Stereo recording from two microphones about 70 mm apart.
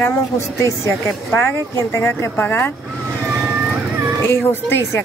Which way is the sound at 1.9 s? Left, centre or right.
Left.